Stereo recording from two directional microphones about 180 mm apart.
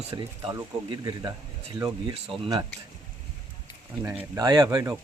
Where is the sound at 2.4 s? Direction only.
25° right (ahead or behind).